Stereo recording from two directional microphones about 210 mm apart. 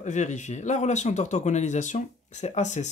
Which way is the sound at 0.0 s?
35° left (ahead or behind).